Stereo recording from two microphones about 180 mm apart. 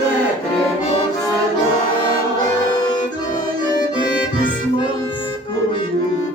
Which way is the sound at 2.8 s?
25° left (ahead or behind).